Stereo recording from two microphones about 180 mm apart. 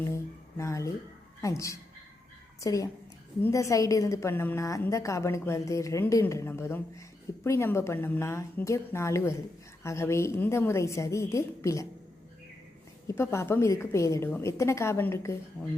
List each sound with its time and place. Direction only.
0.0 s a sound: 15° left (ahead or behind)
1.4 s a woman's voice: 15° left (ahead or behind)
13.1 s a woman's voice: 15° left (ahead or behind)